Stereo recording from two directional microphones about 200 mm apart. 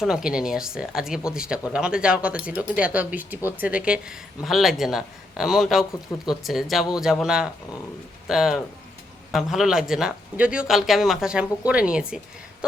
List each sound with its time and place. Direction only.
0.0 s speech: 5° right (ahead or behind)